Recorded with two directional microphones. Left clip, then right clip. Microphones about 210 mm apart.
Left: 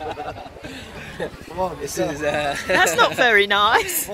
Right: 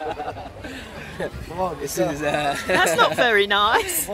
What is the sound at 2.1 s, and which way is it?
Speech, 45° right (ahead or behind).